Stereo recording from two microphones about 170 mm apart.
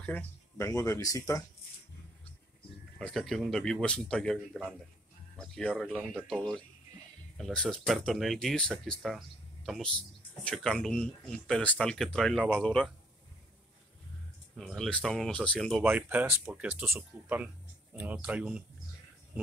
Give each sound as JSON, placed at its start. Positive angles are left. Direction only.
{"t": 0.0, "sound": "speech", "side_deg": 15}
{"t": 3.0, "sound": "speech", "side_deg": 5}
{"t": 5.4, "sound": "speech", "side_deg": 5}
{"t": 14.6, "sound": "speech", "side_deg": 5}
{"t": 15.8, "sound": "speech", "side_deg": -10}